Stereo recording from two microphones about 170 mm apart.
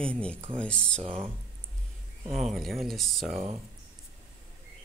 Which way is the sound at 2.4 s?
Centre (ahead or behind).